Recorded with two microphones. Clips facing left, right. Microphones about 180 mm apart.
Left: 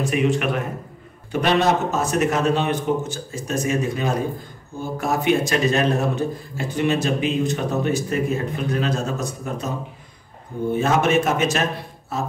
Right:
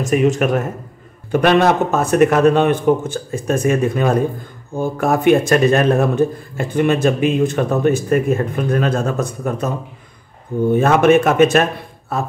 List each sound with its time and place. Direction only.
0.0 s speech: 45° right (ahead or behind)
1.3 s speech: 55° right (ahead or behind)
10.7 s speech: 55° right (ahead or behind)